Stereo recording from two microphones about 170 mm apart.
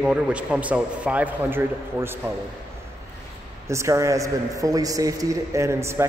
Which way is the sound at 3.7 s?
15° right (ahead or behind).